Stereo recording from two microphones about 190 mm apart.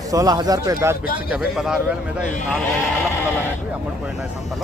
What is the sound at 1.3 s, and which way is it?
Speech, 5° right (ahead or behind).